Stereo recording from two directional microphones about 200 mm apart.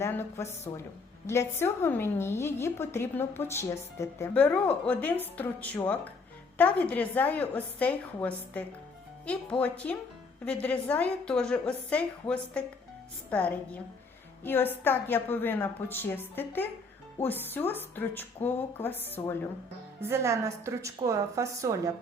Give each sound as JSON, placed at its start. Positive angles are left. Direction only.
{"t": 0.0, "sound": "a woman's voice", "side_deg": 15}
{"t": 20.0, "sound": "a woman's voice", "side_deg": -15}